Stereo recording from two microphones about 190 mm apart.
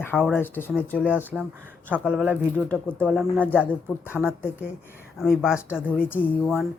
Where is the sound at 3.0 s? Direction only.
5° right (ahead or behind).